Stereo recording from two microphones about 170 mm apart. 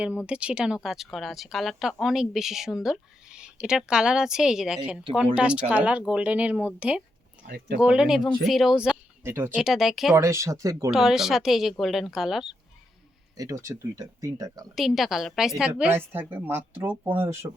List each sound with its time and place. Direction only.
0.0 s speech: 5° right (ahead or behind)
7.4 s speech: 65° right (ahead or behind)
7.8 s speech: 5° right (ahead or behind)
9.6 s speech: centre (ahead or behind)
10.2 s speech: 15° right (ahead or behind)
10.9 s speech: centre (ahead or behind)
13.3 s speech: 20° right (ahead or behind)
14.8 s speech: centre (ahead or behind)